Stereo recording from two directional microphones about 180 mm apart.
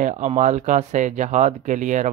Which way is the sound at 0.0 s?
40° right (ahead or behind).